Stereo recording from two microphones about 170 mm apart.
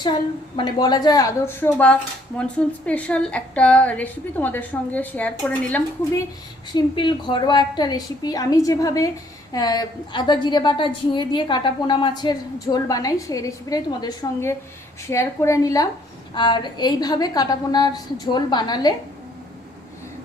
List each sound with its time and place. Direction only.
0.0 s a woman's voice: 25° left (ahead or behind)
1.6 s a woman's voice: 10° left (ahead or behind)
6.7 s a woman's voice: 25° left (ahead or behind)